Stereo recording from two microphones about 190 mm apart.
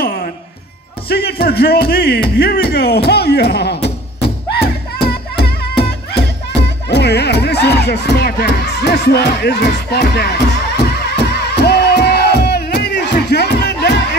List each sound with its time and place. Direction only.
0.0 s music: 50° left (ahead or behind)
6.9 s speech: 60° left (ahead or behind)
11.5 s music: 60° left (ahead or behind)